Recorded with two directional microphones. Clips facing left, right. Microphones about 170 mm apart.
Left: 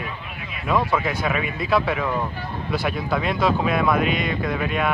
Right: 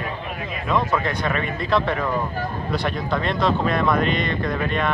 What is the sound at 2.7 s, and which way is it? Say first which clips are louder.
Speech: left 1 dB; 5° left (ahead or behind).